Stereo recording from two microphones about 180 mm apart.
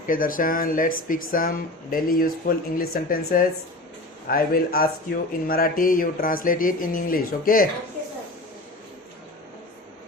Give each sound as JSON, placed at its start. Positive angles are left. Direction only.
{"t": 0.1, "sound": "speech", "side_deg": 50}